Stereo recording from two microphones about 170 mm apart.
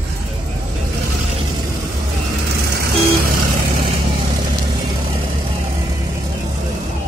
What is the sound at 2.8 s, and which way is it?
Vehicle, 60° right (ahead or behind).